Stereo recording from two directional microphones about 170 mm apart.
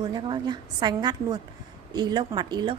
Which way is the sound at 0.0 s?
25° right (ahead or behind).